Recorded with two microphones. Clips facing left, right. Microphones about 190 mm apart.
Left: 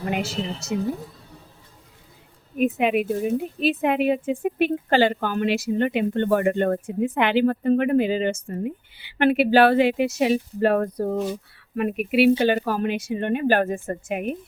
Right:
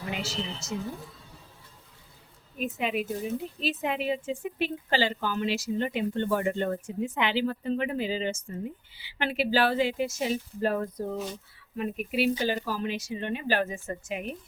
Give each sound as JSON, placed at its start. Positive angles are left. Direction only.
{"t": 0.0, "sound": "a woman's voice", "side_deg": 55}
{"t": 2.6, "sound": "a woman's voice", "side_deg": 60}